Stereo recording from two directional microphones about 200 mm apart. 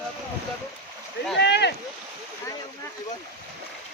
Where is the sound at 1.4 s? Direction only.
55° left (ahead or behind).